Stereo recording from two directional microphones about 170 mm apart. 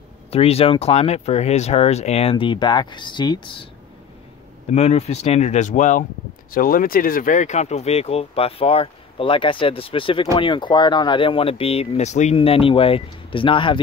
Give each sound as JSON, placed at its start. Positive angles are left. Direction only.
{"t": 0.3, "sound": "speech", "side_deg": 35}
{"t": 4.6, "sound": "speech", "side_deg": 40}